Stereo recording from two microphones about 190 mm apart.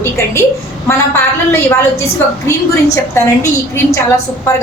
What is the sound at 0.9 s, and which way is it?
A woman's voice, 10° left (ahead or behind).